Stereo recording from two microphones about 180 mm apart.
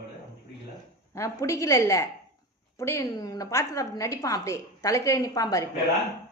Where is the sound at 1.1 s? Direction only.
15° left (ahead or behind).